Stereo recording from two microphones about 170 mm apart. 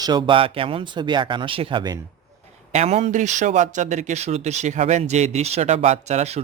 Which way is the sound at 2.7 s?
40° right (ahead or behind).